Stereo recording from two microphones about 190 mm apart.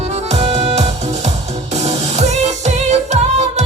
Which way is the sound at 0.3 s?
35° right (ahead or behind).